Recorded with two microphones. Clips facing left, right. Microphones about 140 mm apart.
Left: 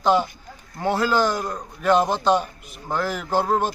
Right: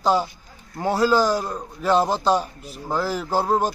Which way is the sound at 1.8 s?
30° right (ahead or behind).